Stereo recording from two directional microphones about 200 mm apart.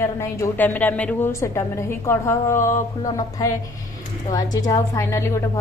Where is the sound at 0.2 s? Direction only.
10° left (ahead or behind).